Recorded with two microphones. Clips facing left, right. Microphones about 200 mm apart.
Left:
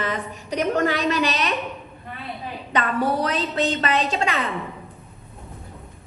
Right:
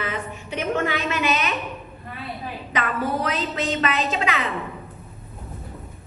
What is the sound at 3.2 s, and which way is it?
A woman's voice, 35° left (ahead or behind).